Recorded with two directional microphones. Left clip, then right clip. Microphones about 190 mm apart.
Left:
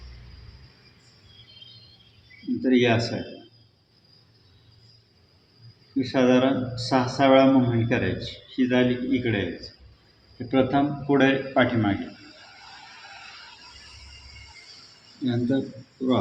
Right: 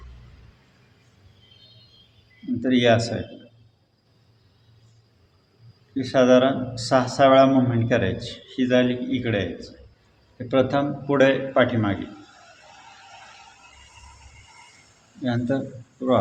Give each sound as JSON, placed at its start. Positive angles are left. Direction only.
{"t": 2.6, "sound": "speech", "side_deg": -50}
{"t": 6.0, "sound": "speech", "side_deg": -50}
{"t": 15.2, "sound": "speech", "side_deg": -50}